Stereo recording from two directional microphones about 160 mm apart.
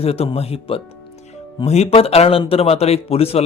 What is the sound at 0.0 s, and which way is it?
A man's voice, 40° left (ahead or behind).